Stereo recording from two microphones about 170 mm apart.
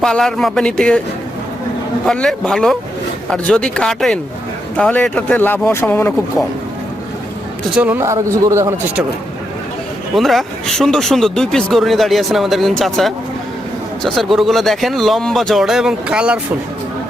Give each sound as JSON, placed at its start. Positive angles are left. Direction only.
{"t": 0.0, "sound": "speech", "side_deg": 5}
{"t": 2.0, "sound": "speech", "side_deg": 5}
{"t": 7.8, "sound": "a man's voice", "side_deg": -10}
{"t": 10.2, "sound": "speech", "side_deg": 0}